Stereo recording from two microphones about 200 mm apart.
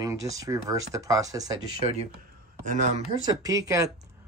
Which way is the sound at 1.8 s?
30° right (ahead or behind).